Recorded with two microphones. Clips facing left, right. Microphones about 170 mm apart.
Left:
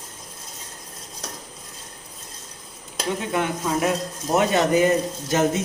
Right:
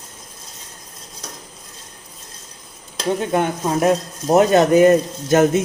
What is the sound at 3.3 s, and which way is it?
Speech, 35° right (ahead or behind).